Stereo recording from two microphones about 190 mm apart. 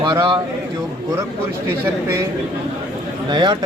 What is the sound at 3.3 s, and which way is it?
Speech, 25° right (ahead or behind).